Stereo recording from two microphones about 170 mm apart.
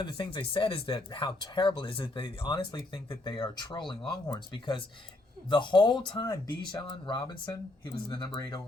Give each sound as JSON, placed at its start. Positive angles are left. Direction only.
{"t": 0.0, "sound": "speech", "side_deg": 30}